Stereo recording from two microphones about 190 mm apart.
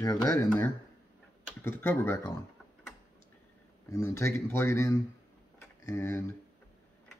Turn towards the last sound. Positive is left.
turn(degrees=15)  # may be behind; listen again after turning